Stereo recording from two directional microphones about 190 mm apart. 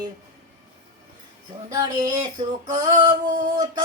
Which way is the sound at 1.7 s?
20° right (ahead or behind).